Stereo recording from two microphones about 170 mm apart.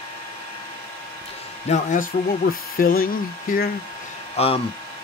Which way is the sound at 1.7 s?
50° left (ahead or behind).